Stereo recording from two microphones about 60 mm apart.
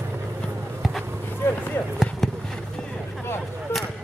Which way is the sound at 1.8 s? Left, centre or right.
Left.